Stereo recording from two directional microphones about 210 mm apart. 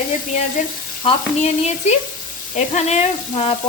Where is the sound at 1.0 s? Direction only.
30° left (ahead or behind).